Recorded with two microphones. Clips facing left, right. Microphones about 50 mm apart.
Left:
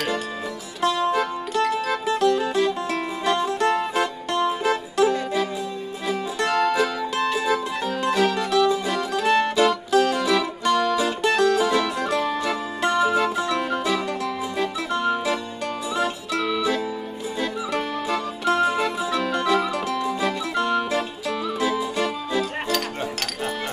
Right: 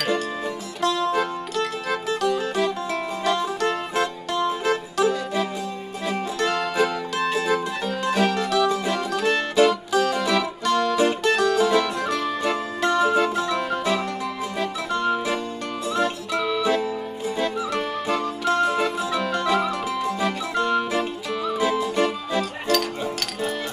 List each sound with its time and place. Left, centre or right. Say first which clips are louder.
0.7 s music: left 1 dB; centre
1.5 s music: left 3 dB; centre
18.1 s music: even; centre